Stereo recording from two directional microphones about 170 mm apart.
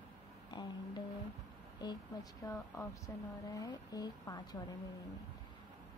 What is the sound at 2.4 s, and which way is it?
A woman's voice, 20° left (ahead or behind).